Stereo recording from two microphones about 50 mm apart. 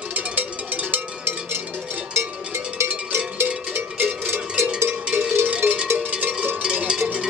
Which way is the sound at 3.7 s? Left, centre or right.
Right.